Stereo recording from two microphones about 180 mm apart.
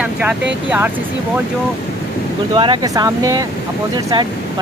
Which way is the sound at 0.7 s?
10° right (ahead or behind).